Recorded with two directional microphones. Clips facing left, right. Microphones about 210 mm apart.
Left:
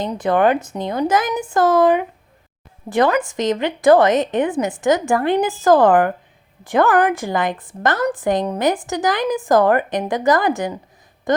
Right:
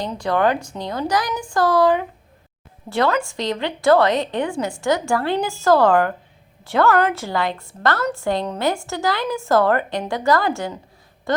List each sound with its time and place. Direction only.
0.0 s a woman's voice: 20° left (ahead or behind)